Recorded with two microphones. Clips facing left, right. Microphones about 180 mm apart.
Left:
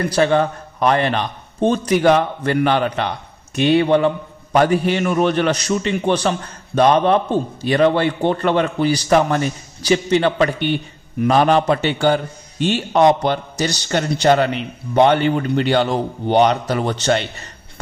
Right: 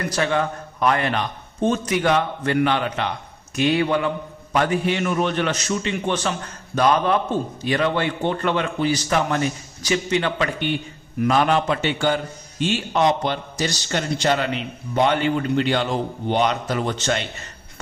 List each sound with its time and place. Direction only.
0.1 s a man's voice: 35° left (ahead or behind)
3.5 s a man's voice: 30° left (ahead or behind)
4.5 s a man's voice: 40° left (ahead or behind)